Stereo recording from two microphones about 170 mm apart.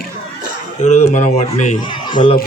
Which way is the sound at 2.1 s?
30° left (ahead or behind).